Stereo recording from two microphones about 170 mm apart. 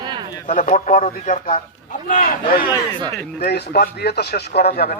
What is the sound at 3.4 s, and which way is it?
Speech, 70° left (ahead or behind).